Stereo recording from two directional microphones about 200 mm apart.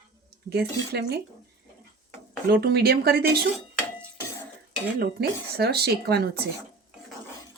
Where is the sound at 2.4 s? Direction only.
50° right (ahead or behind).